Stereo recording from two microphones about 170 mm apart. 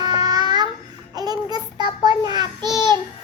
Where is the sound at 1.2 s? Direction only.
25° right (ahead or behind).